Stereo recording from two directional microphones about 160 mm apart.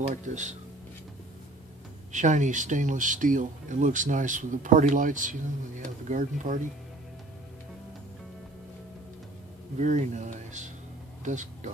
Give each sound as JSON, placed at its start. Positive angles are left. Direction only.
{"t": 0.1, "sound": "speech", "side_deg": -50}
{"t": 2.1, "sound": "speech", "side_deg": -50}
{"t": 9.8, "sound": "speech", "side_deg": -50}